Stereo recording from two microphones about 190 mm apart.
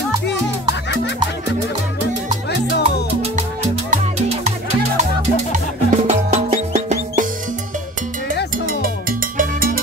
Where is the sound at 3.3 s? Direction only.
35° right (ahead or behind).